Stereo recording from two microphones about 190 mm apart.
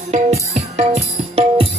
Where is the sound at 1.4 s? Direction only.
30° right (ahead or behind).